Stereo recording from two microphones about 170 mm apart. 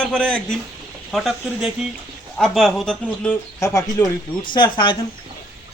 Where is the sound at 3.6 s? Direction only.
20° left (ahead or behind).